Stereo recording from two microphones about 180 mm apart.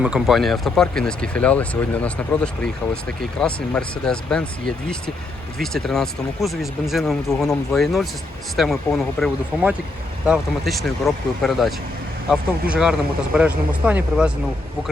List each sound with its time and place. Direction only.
0.0 s speech: 5° right (ahead or behind)